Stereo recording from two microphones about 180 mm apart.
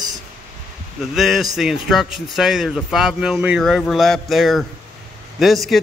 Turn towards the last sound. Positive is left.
turn(degrees=0)  # may be behind; listen again after turning